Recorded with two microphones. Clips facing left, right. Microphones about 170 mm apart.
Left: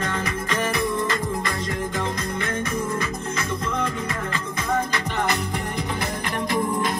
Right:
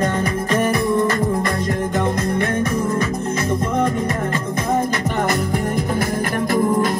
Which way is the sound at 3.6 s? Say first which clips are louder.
Right 8 dB; 45° right (ahead or behind).